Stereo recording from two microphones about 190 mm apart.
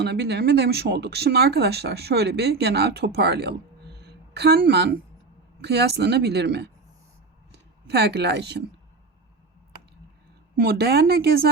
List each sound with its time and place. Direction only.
0.0 s speech: 60° right (ahead or behind)
4.0 s a sound: 60° right (ahead or behind)
5.6 s speech: 60° right (ahead or behind)
7.9 s speech: 60° right (ahead or behind)
10.6 s speech: 55° right (ahead or behind)